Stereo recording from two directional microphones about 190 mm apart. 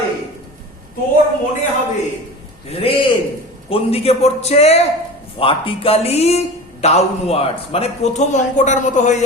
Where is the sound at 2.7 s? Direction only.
30° left (ahead or behind).